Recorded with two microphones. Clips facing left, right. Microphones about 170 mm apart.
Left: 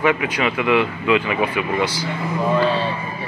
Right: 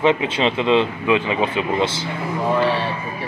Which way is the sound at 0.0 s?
25° right (ahead or behind).